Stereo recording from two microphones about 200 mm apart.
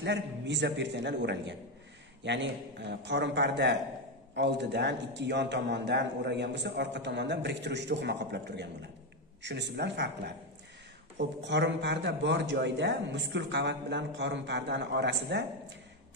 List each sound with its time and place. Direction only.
0.0 s a man's voice: 60° right (ahead or behind)